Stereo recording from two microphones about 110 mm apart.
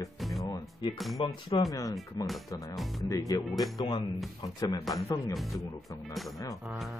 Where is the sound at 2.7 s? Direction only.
Centre (ahead or behind).